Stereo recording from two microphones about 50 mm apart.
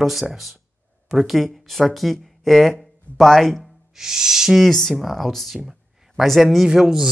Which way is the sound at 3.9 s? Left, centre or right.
Centre.